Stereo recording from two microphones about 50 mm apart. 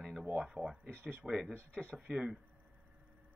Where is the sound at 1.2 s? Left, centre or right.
Centre.